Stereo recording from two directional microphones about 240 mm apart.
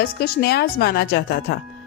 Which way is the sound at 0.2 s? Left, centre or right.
Left.